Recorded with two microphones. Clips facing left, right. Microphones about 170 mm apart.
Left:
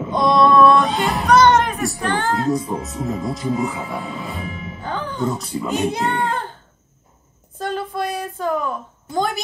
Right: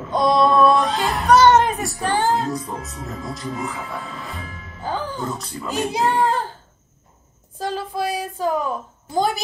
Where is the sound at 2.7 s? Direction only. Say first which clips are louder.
Left 7 dB; 20° left (ahead or behind).